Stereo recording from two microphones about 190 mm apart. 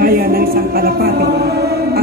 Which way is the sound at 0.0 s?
50° right (ahead or behind).